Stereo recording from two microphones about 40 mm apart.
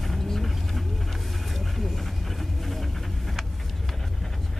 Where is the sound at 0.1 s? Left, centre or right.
Centre.